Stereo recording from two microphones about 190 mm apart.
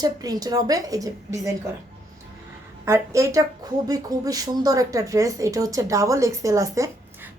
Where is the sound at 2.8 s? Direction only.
15° right (ahead or behind).